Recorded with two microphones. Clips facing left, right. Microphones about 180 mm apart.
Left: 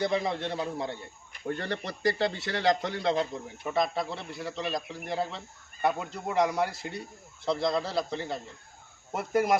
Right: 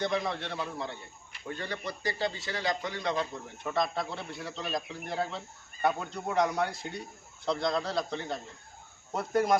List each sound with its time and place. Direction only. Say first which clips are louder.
0.0 s a man's voice: left 3 dB; 10° left (ahead or behind)
1.3 s speech: left 5 dB; 60° left (ahead or behind)
2.9 s a man's voice: left 4 dB; 30° left (ahead or behind)
3.6 s a man's voice: left 2 dB; 10° left (ahead or behind)